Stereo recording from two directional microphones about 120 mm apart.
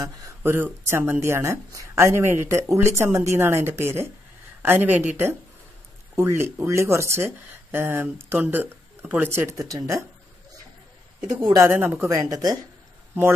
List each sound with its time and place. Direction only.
0.0 s speech: 20° right (ahead or behind)
11.5 s speech: 20° right (ahead or behind)